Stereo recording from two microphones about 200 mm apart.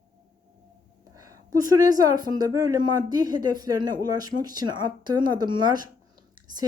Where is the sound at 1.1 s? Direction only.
15° right (ahead or behind).